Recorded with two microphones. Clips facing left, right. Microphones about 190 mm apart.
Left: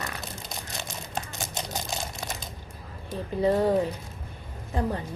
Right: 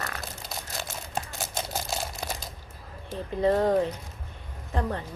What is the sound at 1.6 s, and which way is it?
Camera, 5° right (ahead or behind).